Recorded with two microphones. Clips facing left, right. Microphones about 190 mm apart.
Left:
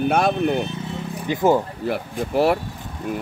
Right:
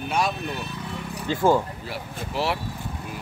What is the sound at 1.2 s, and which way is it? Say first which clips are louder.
Speech: left 2 dB; 15° left (ahead or behind).